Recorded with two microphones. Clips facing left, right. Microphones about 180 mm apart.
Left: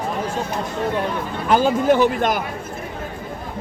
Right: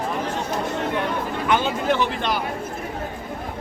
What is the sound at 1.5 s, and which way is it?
Speech, 40° left (ahead or behind).